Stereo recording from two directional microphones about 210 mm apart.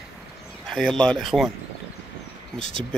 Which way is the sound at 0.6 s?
Centre (ahead or behind).